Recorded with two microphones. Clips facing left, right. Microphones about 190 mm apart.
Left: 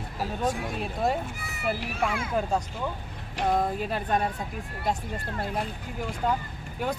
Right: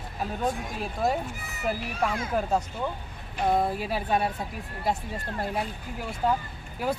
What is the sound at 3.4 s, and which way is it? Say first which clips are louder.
Speech: right 1 dB; 10° right (ahead or behind).